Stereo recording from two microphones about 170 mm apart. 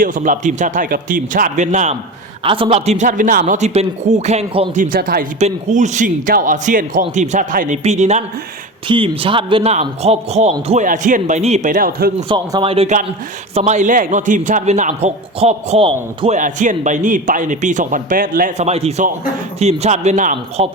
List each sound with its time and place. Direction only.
0.0 s a man's voice: 50° right (ahead or behind)
2.4 s speech: 30° right (ahead or behind)
4.8 s speech: 55° right (ahead or behind)
5.4 s a man's voice: 45° right (ahead or behind)
8.9 s a man's voice: 30° right (ahead or behind); by 12.1 s 60° right (ahead or behind)
12.3 s a man's voice: 30° right (ahead or behind)
16.4 s a man's voice: 50° right (ahead or behind)